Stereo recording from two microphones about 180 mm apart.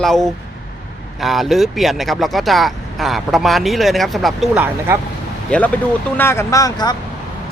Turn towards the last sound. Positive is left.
turn(degrees=20)  # may be behind; listen again after turning